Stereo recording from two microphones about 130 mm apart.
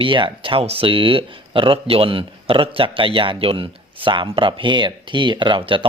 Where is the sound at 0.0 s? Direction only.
40° right (ahead or behind).